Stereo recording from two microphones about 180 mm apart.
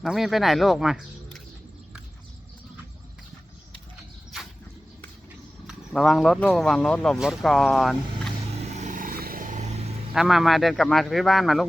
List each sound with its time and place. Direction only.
0.0 s speech: centre (ahead or behind)
5.6 s speech: centre (ahead or behind)
8.7 s a sound: 45° right (ahead or behind)
10.2 s speech: centre (ahead or behind)